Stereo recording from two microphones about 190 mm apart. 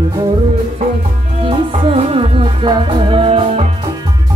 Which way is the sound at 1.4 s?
25° right (ahead or behind).